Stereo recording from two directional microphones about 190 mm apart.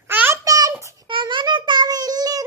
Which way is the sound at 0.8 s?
25° right (ahead or behind).